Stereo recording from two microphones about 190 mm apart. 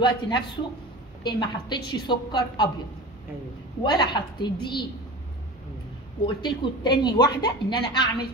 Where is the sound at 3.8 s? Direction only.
25° left (ahead or behind).